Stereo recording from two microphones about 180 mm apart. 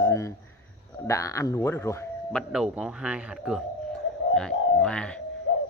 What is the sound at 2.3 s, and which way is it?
Speech, 5° right (ahead or behind).